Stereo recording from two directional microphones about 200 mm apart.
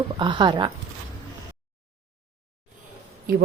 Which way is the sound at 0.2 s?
20° right (ahead or behind).